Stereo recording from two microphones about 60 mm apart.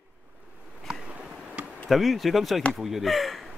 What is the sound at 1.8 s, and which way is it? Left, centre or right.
A man's voice, centre.